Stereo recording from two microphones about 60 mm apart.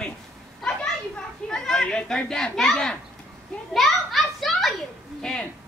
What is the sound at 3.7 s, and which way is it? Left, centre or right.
Children playing, centre.